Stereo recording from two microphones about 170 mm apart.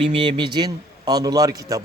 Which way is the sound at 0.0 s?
30° right (ahead or behind).